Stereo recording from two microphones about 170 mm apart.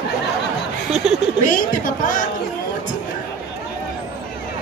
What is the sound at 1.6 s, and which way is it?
Speech, 55° left (ahead or behind).